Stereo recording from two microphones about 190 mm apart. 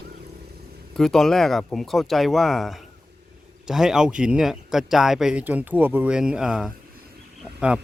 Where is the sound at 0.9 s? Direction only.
Centre (ahead or behind).